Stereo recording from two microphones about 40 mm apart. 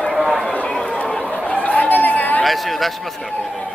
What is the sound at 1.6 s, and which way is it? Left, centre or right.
Chatter, left.